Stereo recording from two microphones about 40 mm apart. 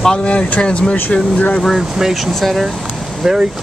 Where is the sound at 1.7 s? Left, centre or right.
Centre.